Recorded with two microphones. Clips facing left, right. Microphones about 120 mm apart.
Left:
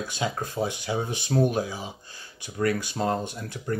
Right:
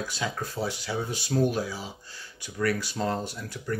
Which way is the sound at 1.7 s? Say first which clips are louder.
Left 1 dB; 20° left (ahead or behind).